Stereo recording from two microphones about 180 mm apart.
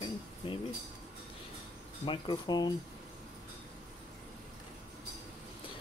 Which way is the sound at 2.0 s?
25° left (ahead or behind).